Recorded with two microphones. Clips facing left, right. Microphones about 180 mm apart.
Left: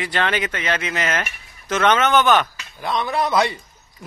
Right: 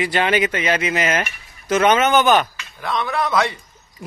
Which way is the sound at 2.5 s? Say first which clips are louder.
Even; 30° left (ahead or behind).